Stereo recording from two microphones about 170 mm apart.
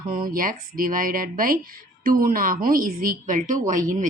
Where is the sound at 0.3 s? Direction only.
55° right (ahead or behind).